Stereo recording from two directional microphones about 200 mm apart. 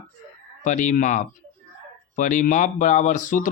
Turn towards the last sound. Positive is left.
turn(degrees=40)  # may be behind; listen again after turning